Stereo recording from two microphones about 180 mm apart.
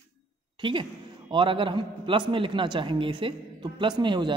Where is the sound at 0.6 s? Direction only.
25° right (ahead or behind).